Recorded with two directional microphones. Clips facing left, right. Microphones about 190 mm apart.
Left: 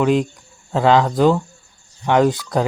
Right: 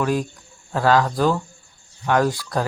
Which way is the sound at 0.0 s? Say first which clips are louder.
Left 5 dB; 20° left (ahead or behind).